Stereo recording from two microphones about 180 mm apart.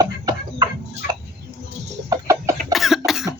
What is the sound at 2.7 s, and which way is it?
Cough, centre (ahead or behind).